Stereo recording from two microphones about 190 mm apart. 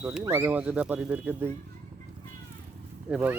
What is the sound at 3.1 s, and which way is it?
Speech, 10° right (ahead or behind).